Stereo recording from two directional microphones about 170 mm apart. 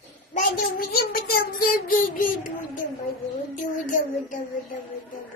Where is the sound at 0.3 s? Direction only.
55° left (ahead or behind).